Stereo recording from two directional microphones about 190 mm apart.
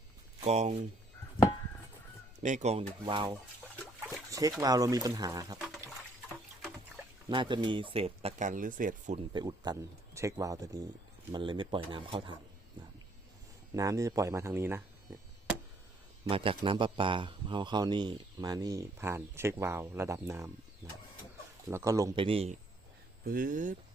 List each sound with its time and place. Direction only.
0.3 s speech: 35° right (ahead or behind)
2.4 s speech: 40° right (ahead or behind)
4.3 s a sound: 20° right (ahead or behind)
4.6 s a man's voice: 20° right (ahead or behind)
7.3 s speech: 25° right (ahead or behind); by 9.1 s 45° right (ahead or behind)
9.1 s a man's voice: 25° right (ahead or behind)
13.7 s speech: 15° right (ahead or behind)
16.3 s a man's voice: 30° right (ahead or behind)
21.7 s a man's voice: 15° right (ahead or behind); by 22.5 s 30° right (ahead or behind)
23.2 s speech: 50° right (ahead or behind)